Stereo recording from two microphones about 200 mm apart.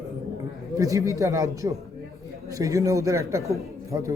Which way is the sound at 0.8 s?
15° right (ahead or behind).